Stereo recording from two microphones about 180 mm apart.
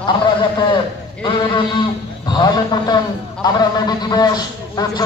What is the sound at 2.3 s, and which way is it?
Speech, 25° left (ahead or behind).